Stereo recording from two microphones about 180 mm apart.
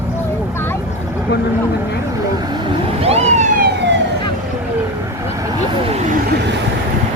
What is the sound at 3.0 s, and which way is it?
Vehicle, 35° right (ahead or behind).